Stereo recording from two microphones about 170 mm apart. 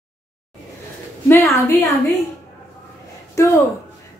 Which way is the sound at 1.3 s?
10° left (ahead or behind).